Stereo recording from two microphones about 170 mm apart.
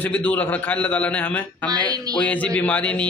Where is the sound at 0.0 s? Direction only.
10° left (ahead or behind).